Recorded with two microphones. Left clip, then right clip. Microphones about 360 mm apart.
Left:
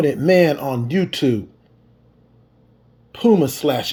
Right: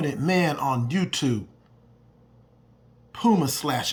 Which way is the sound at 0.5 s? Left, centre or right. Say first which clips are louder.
Left 1 dB; right.